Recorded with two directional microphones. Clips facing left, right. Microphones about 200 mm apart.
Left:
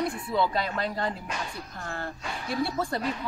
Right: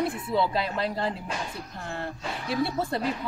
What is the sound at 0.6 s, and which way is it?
Speech, 25° right (ahead or behind).